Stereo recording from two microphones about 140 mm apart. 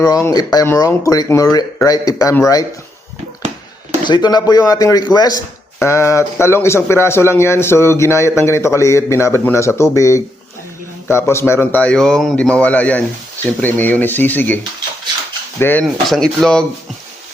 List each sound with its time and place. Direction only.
0.0 s a man's voice: 20° left (ahead or behind)
4.0 s a man's voice: 30° left (ahead or behind); by 15.8 s 15° left (ahead or behind)
16.0 s speech: centre (ahead or behind)